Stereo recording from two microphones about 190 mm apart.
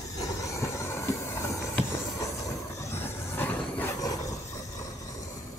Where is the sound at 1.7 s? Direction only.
15° left (ahead or behind).